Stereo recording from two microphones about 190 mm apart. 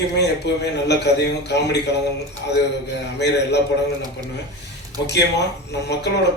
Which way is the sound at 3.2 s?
65° left (ahead or behind).